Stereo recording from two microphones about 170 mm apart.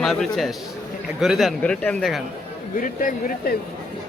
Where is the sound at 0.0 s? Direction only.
Centre (ahead or behind).